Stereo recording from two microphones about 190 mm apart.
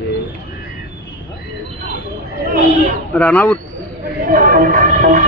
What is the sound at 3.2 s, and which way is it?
Speech, 10° left (ahead or behind).